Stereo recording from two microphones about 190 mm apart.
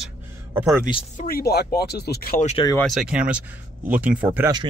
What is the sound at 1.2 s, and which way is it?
Speech, 50° left (ahead or behind).